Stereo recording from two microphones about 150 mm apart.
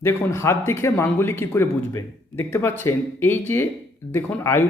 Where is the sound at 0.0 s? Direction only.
20° left (ahead or behind).